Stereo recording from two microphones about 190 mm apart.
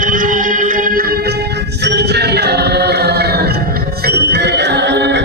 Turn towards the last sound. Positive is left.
turn(degrees=-65)  # may be behind; listen again after turning